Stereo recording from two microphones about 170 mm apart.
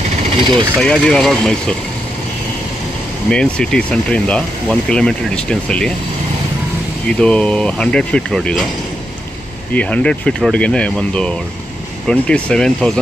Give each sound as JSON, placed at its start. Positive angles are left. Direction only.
{"t": 0.4, "sound": "speech", "side_deg": -30}
{"t": 0.7, "sound": "speech", "side_deg": 5}
{"t": 3.3, "sound": "speech", "side_deg": 5}
{"t": 7.1, "sound": "speech", "side_deg": 5}
{"t": 9.8, "sound": "speech", "side_deg": 5}